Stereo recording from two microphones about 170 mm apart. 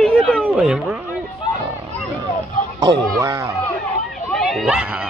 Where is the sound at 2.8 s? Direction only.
20° right (ahead or behind).